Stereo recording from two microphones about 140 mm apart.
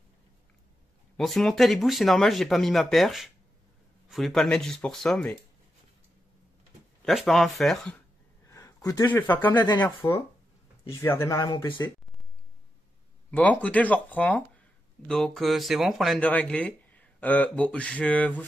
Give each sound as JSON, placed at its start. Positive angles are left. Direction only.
{"t": 1.1, "sound": "speech", "side_deg": 0}
{"t": 7.1, "sound": "speech", "side_deg": 0}
{"t": 8.5, "sound": "speech", "side_deg": 20}
{"t": 11.3, "sound": "speech", "side_deg": 35}
{"t": 13.3, "sound": "speech", "side_deg": 10}
{"t": 16.2, "sound": "speech", "side_deg": 10}